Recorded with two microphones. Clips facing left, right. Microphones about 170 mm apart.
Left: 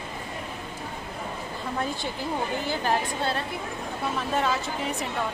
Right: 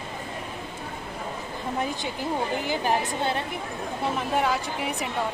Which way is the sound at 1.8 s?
15° right (ahead or behind).